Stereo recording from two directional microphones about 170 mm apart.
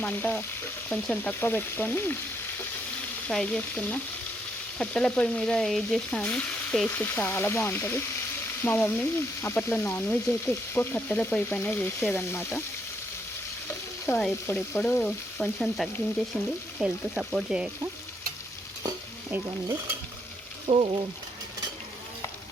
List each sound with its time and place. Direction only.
0.0 s frying: 10° left (ahead or behind)
3.2 s frying: 5° left (ahead or behind)
14.1 s frying: 10° left (ahead or behind)
16.7 s speech: 5° right (ahead or behind)
20.7 s frying: 30° right (ahead or behind)